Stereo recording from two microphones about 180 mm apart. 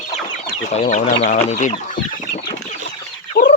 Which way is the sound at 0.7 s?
40° left (ahead or behind).